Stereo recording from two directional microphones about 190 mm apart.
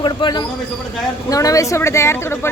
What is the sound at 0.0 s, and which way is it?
A man's voice, 25° left (ahead or behind).